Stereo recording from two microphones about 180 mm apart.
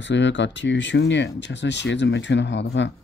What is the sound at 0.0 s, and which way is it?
Speech, 80° left.